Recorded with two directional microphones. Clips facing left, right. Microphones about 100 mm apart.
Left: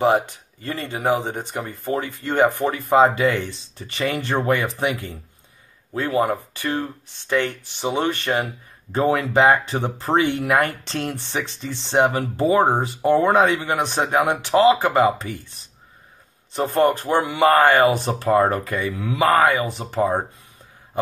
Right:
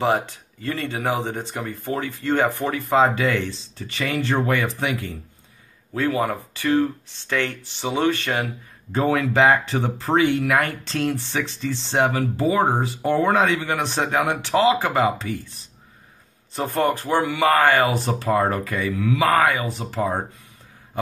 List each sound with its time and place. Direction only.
0.0 s speech: 15° left (ahead or behind)
12.1 s speech: 30° left (ahead or behind)
16.5 s speech: 20° left (ahead or behind)